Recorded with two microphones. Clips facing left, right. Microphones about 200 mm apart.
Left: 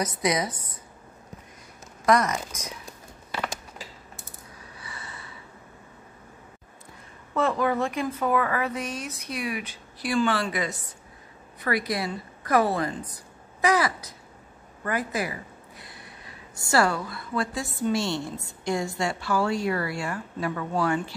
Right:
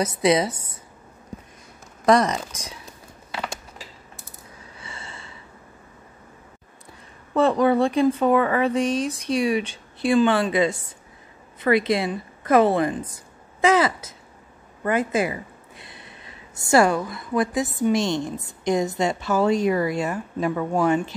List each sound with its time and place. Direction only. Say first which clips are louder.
0.0 s speech: right 6 dB; 30° right (ahead or behind)
2.0 s speech: right 4 dB; 30° right (ahead or behind)
4.7 s gasp: right 2 dB; 25° right (ahead or behind)
7.3 s a woman's voice: right 6 dB; 30° right (ahead or behind)
15.8 s a sound: right 1 dB; 25° right (ahead or behind)
16.6 s speech: right 6 dB; 20° right (ahead or behind)